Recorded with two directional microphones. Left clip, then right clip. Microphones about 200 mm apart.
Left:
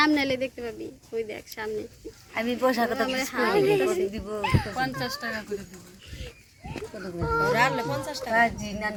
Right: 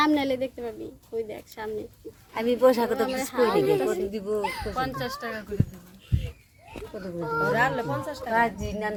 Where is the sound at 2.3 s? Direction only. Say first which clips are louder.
Right 4 dB; 55° right (ahead or behind).